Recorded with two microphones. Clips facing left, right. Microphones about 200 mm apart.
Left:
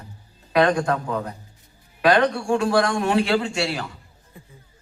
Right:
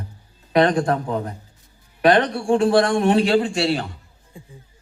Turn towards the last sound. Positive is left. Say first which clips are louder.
# right 5 dB
turn(degrees=-25)  # may be behind; listen again after turning